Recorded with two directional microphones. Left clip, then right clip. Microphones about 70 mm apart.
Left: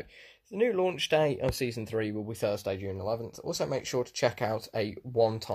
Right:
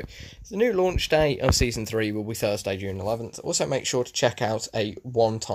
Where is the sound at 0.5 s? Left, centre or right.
Right.